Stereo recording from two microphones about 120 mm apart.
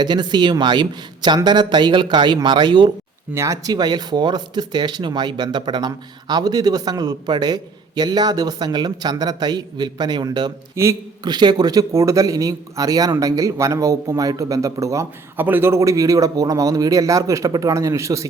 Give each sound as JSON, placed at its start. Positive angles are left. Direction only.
{"t": 0.0, "sound": "speech", "side_deg": -40}
{"t": 3.3, "sound": "speech", "side_deg": -25}
{"t": 10.8, "sound": "a man's voice", "side_deg": -20}
{"t": 11.2, "sound": "a man's voice", "side_deg": -35}